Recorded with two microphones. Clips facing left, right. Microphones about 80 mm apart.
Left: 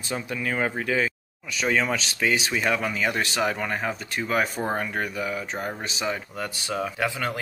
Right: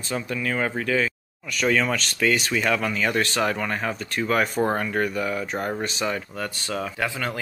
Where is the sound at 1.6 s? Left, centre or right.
Centre.